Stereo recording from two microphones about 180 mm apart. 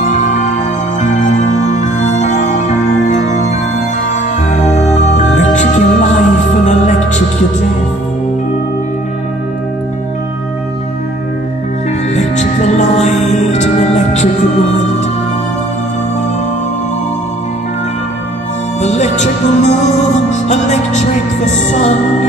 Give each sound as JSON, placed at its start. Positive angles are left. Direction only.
{"t": 0.0, "sound": "music", "side_deg": 40}
{"t": 12.1, "sound": "music", "side_deg": 40}
{"t": 18.8, "sound": "music", "side_deg": 40}